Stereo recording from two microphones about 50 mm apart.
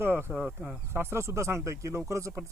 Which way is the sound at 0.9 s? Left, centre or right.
Right.